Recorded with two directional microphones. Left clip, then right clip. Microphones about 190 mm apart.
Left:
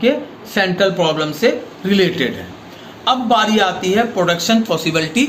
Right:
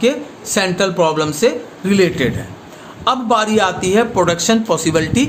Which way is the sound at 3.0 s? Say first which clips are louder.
Left 1 dB; 45° right (ahead or behind).